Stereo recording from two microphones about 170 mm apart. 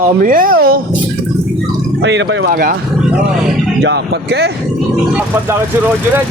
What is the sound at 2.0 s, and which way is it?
Speech, 90° right.